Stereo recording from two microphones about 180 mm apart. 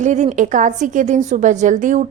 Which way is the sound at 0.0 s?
40° right (ahead or behind).